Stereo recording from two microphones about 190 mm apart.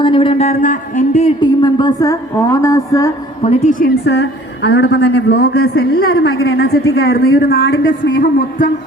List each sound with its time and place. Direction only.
0.0 s a man's voice: 25° left (ahead or behind)
1.4 s speech: 25° left (ahead or behind)
3.5 s a woman's voice: 40° left (ahead or behind); by 6.7 s 90° left
6.7 s a woman's voice: 60° left (ahead or behind)
8.2 s a sound: 45° left (ahead or behind)